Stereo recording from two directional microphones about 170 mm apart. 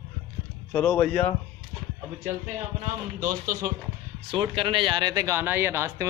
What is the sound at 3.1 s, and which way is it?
Speech, 55° right (ahead or behind).